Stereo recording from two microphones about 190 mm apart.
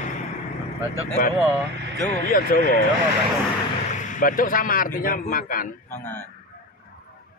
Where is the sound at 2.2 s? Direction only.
50° left (ahead or behind).